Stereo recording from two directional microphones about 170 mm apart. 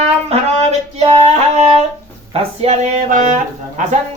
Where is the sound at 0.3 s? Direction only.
40° right (ahead or behind).